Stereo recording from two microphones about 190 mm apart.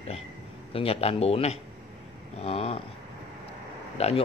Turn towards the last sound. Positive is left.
turn(degrees=30)  # may be behind; listen again after turning